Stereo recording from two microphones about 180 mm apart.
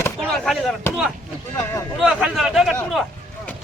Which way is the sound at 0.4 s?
Centre (ahead or behind).